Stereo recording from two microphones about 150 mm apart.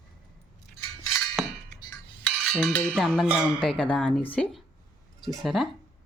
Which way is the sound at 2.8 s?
Centre (ahead or behind).